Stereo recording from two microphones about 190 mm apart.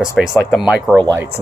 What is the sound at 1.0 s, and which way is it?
Speech, 20° right (ahead or behind).